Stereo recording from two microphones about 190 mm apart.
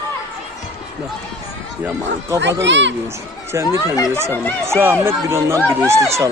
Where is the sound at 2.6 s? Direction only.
70° right (ahead or behind).